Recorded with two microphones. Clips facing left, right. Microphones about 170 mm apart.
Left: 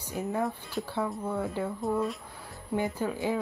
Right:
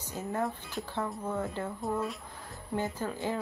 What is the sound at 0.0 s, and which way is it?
Speech, 15° left (ahead or behind).